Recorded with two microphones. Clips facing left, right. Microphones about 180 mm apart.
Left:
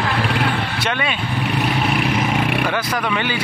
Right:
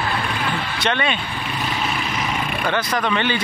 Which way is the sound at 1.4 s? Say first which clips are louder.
Left 8 dB; 65° left (ahead or behind).